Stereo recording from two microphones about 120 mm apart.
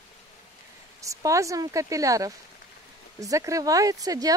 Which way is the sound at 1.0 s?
25° right (ahead or behind).